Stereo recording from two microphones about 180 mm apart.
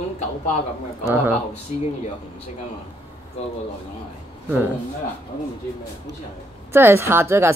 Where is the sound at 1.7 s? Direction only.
45° left (ahead or behind).